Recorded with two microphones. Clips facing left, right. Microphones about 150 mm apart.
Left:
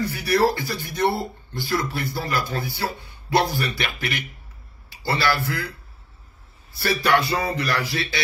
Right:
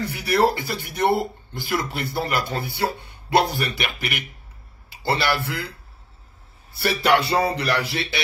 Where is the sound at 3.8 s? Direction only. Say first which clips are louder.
Even; 15° right (ahead or behind).